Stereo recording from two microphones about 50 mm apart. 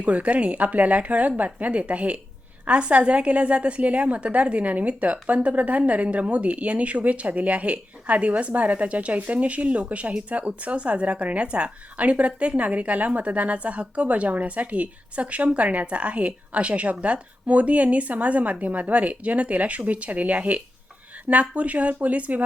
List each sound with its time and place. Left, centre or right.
0.0 s a woman's voice: right